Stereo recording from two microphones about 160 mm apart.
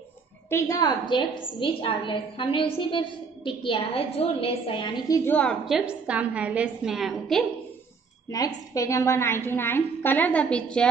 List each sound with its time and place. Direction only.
0.5 s a woman's voice: 20° left (ahead or behind)
5.3 s a woman's voice: 5° left (ahead or behind)
8.3 s a woman's voice: 20° left (ahead or behind)